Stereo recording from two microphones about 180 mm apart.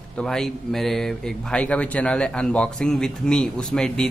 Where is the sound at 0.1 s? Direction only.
5° left (ahead or behind).